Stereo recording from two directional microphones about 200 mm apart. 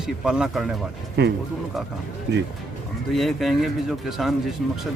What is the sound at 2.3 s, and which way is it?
Speech, 55° right (ahead or behind).